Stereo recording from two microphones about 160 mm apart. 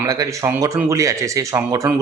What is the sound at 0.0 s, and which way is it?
Speech, 20° right (ahead or behind).